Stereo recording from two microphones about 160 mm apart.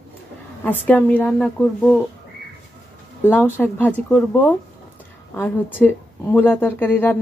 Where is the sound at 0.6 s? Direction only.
10° left (ahead or behind).